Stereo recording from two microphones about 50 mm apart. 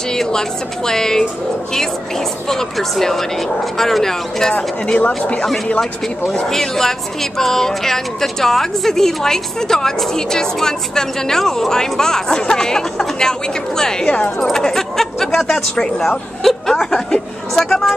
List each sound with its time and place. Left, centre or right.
0.1 s speech: centre
4.8 s speech: left
6.5 s speech: centre
14.0 s speech: left
14.4 s speech: centre